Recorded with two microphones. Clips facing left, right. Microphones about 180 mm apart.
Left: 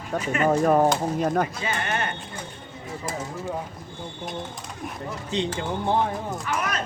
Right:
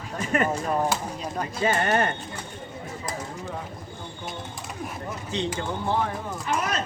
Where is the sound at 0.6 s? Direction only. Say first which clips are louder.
Left 6 dB; 50° left (ahead or behind).